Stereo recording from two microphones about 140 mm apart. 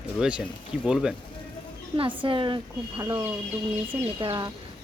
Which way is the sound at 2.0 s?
35° right (ahead or behind).